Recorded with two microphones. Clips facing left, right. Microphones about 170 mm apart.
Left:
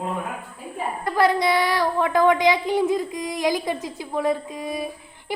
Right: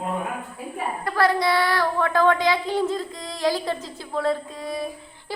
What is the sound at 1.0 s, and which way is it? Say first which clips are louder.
A woman's voice: left 2 dB; 20° left (ahead or behind).